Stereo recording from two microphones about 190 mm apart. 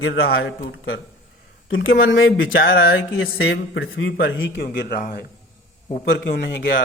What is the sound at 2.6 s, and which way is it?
Speech, 50° left (ahead or behind).